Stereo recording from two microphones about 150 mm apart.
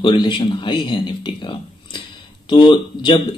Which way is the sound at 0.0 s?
30° left (ahead or behind).